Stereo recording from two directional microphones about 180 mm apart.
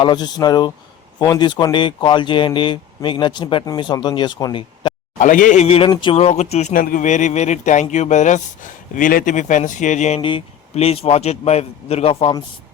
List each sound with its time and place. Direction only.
0.0 s speech: 25° left (ahead or behind)
5.2 s speech: 45° left (ahead or behind)
10.2 s speech: 30° left (ahead or behind)